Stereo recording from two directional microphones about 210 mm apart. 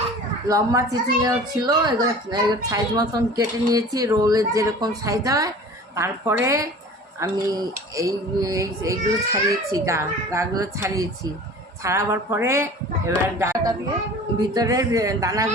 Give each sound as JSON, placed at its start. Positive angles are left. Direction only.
{"t": 0.4, "sound": "a woman's voice", "side_deg": -15}